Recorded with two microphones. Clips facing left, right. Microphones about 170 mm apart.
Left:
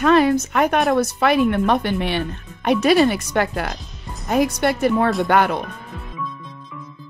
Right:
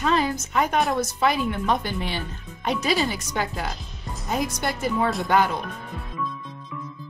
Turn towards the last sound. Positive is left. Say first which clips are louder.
# left 4 dB
turn(degrees=65)  # may be behind; listen again after turning